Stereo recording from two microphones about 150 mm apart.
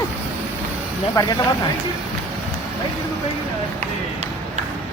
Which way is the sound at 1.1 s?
25° left (ahead or behind).